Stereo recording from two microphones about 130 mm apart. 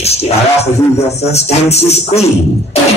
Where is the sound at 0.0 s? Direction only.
55° left (ahead or behind).